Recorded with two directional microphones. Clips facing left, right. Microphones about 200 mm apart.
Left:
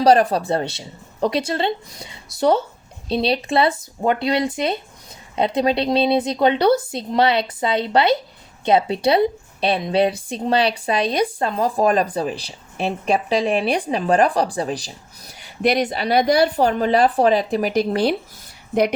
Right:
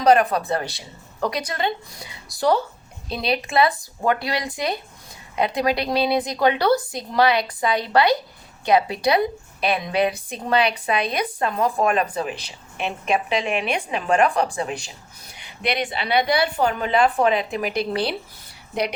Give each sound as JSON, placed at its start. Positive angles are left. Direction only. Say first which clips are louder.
{"t": 0.0, "sound": "a woman's voice", "louder": "left 2 dB", "side_deg": 30}